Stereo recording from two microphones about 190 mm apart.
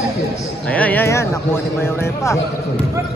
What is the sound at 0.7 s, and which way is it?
Speech, 10° left (ahead or behind).